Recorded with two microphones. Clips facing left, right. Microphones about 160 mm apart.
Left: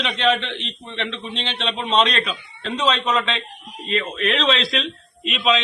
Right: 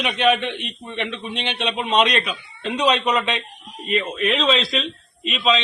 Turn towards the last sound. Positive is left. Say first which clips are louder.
# even
turn(degrees=0)  # may be behind; listen again after turning